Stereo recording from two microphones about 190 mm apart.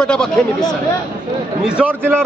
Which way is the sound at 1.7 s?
5° right (ahead or behind).